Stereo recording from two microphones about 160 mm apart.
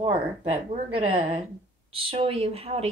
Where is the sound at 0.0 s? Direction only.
30° right (ahead or behind).